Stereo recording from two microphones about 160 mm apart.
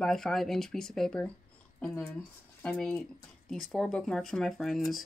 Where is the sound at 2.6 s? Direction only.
5° left (ahead or behind).